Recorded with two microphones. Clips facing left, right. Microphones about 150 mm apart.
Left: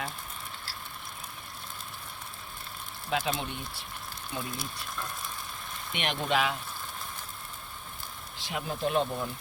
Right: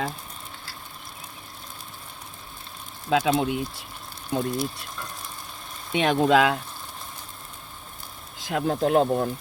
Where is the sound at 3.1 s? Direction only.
90° right.